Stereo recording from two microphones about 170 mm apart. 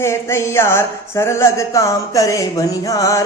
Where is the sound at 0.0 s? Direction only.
15° left (ahead or behind).